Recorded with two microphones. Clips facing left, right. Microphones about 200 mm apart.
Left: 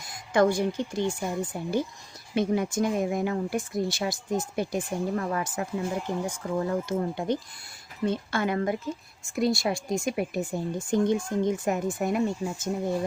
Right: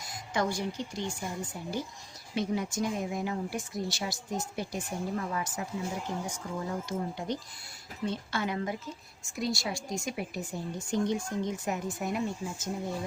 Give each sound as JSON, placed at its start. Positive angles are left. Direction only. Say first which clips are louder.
{"t": 0.3, "sound": "speech", "louder": "left 8 dB", "side_deg": 55}